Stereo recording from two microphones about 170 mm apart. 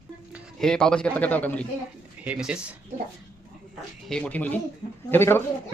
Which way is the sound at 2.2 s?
5° right (ahead or behind).